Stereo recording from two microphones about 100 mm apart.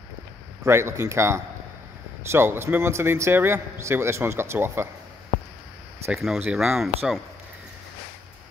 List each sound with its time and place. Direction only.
0.7 s a man's voice: 30° right (ahead or behind)
6.1 s speech: centre (ahead or behind)